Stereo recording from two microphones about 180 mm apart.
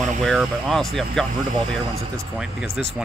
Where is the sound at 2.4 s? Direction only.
5° right (ahead or behind).